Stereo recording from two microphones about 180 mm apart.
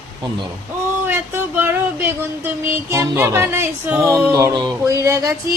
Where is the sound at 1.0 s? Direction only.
10° right (ahead or behind).